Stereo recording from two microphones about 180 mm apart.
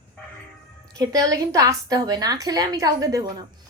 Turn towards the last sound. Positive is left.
turn(degrees=-20)  # may be behind; listen again after turning